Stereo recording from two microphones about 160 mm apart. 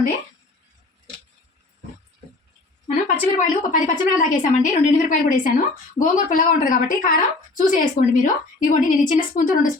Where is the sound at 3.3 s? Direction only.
55° left (ahead or behind).